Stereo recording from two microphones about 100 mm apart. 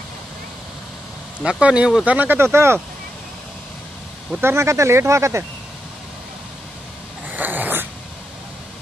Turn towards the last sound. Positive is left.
turn(degrees=-20)  # may be behind; listen again after turning